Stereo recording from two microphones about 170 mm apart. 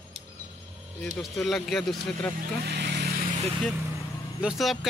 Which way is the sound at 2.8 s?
75° right (ahead or behind).